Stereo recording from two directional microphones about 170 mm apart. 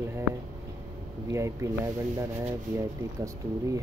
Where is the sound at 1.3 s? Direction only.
15° right (ahead or behind).